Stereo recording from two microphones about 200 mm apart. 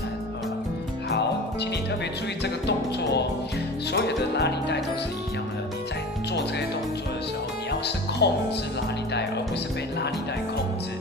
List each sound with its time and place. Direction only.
2.4 s music: 60° left (ahead or behind)
7.8 s speech: 55° left (ahead or behind)